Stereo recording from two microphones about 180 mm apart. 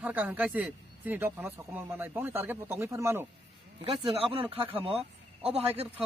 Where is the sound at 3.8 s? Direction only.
30° right (ahead or behind).